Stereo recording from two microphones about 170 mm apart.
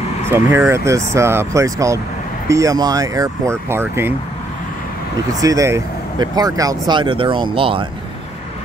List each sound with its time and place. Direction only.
0.3 s speech: 15° right (ahead or behind)
5.3 s speech: 20° right (ahead or behind)